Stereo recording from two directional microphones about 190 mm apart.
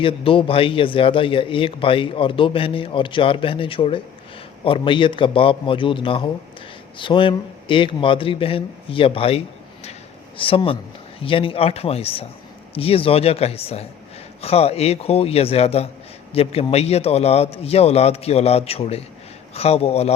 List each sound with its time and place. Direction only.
0.0 s a man's voice: 30° left (ahead or behind)